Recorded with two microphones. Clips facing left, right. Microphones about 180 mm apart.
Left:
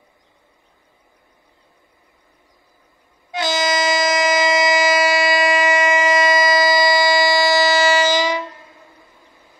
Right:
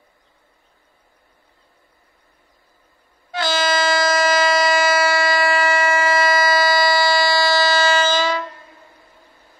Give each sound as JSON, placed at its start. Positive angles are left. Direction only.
{"t": 3.3, "sound": "train", "side_deg": 20}